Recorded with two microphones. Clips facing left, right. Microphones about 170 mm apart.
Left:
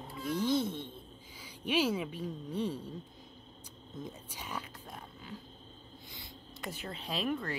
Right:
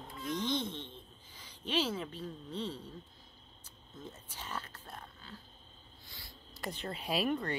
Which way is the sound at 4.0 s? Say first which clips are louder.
Left 3 dB; 10° left (ahead or behind).